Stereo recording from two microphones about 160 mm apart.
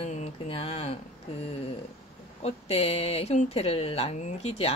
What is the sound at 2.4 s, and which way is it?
Speech, 40° left (ahead or behind).